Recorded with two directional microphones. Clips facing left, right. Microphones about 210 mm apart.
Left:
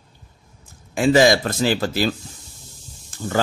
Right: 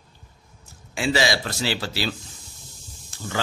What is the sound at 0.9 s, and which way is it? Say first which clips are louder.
A man's voice: left 8 dB; 50° left (ahead or behind).